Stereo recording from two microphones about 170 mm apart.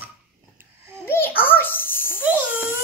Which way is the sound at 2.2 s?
10° right (ahead or behind).